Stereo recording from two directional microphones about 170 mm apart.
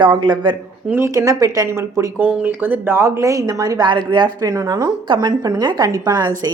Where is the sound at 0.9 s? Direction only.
15° right (ahead or behind).